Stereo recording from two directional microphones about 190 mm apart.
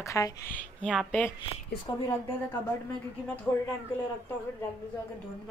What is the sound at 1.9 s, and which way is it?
Speech, 25° left (ahead or behind).